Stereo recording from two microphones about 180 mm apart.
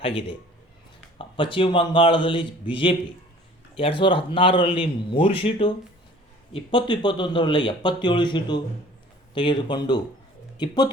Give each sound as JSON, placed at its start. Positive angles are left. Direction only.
{"t": 1.2, "sound": "speech", "side_deg": 30}
{"t": 3.8, "sound": "speech", "side_deg": 30}